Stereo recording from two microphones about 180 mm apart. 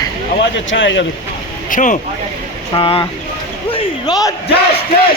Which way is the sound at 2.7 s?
30° left (ahead or behind).